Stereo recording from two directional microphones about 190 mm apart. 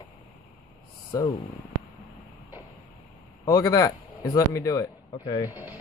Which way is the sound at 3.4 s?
15° left (ahead or behind).